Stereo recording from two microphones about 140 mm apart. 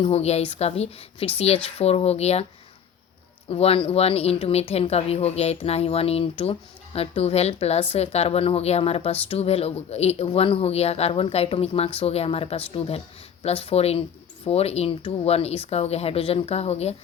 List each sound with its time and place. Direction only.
0.0 s speech: 50° left (ahead or behind)
3.5 s speech: 45° left (ahead or behind)